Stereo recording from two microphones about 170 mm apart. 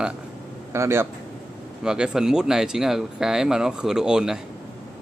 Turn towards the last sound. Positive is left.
turn(degrees=-5)  # may be behind; listen again after turning